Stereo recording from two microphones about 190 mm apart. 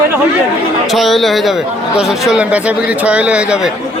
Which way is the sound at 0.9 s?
Centre (ahead or behind).